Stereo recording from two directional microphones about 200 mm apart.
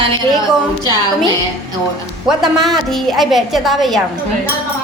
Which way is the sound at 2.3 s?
Centre (ahead or behind).